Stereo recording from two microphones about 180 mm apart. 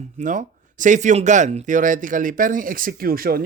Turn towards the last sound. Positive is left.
turn(degrees=-55)  # may be behind; listen again after turning